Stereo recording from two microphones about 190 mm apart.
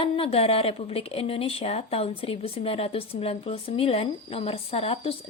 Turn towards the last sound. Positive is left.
turn(degrees=30)  # may be behind; listen again after turning